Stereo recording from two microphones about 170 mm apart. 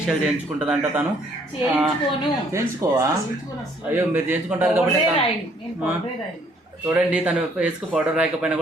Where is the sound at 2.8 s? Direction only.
20° right (ahead or behind).